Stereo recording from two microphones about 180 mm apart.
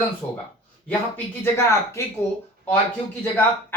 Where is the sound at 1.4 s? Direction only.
15° left (ahead or behind).